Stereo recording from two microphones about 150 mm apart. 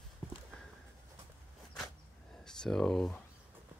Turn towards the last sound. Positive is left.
turn(degrees=5)  # may be behind; listen again after turning